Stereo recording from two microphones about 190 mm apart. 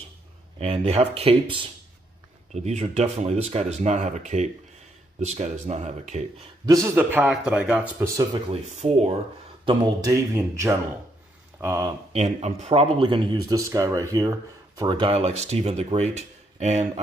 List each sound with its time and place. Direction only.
0.6 s speech: 35° right (ahead or behind)
6.6 s speech: 15° right (ahead or behind)
8.5 s speech: 35° right (ahead or behind)
9.7 s speech: 15° right (ahead or behind)
12.1 s speech: 35° right (ahead or behind)